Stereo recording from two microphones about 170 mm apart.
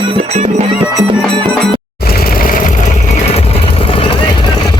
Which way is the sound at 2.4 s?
55° left (ahead or behind).